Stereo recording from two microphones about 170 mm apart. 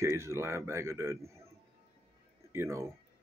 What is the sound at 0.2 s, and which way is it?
Speech, 15° right (ahead or behind).